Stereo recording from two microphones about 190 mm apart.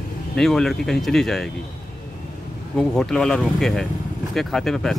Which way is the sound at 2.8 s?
Centre (ahead or behind).